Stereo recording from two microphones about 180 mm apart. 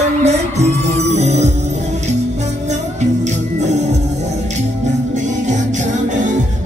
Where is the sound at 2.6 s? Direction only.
40° right (ahead or behind).